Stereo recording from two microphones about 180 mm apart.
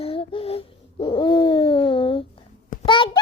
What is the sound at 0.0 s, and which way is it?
Hoot, 30° left (ahead or behind).